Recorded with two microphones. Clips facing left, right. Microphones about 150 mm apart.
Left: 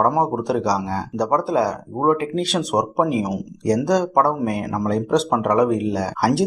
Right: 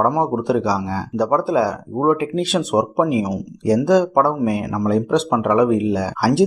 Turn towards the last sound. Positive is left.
turn(degrees=0)  # may be behind; listen again after turning